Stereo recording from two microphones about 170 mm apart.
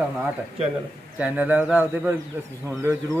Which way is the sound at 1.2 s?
10° right (ahead or behind).